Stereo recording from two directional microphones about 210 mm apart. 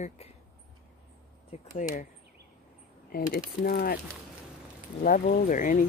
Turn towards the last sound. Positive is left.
turn(degrees=40)  # may be behind; listen again after turning